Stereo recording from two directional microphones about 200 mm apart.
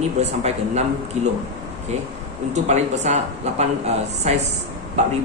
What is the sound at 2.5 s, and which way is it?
Speech, 35° right (ahead or behind).